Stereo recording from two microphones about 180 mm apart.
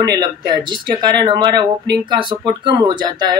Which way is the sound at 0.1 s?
25° right (ahead or behind).